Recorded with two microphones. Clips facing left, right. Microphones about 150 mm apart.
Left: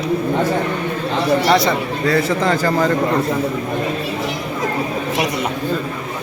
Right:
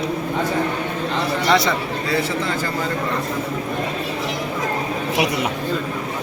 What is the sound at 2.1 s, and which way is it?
Speech, 45° left (ahead or behind).